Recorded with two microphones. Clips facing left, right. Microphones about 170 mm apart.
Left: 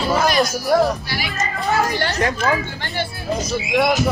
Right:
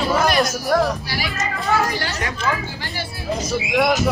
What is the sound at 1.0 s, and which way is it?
Speech, 40° right (ahead or behind).